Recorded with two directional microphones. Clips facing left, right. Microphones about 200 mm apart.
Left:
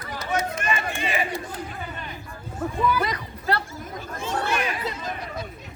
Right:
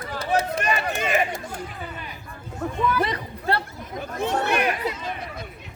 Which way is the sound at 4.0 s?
60° right (ahead or behind).